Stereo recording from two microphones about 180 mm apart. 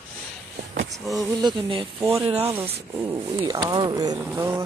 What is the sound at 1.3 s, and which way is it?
Speech, 25° right (ahead or behind).